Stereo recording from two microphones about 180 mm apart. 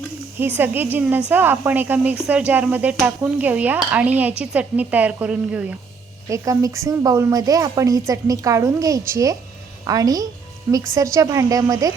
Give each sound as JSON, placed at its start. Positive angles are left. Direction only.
{"t": 0.3, "sound": "dishes", "side_deg": -10}
{"t": 6.2, "sound": "speech", "side_deg": -15}